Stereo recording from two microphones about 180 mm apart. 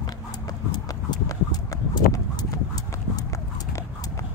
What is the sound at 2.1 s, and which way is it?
Clip-clop, 20° left (ahead or behind).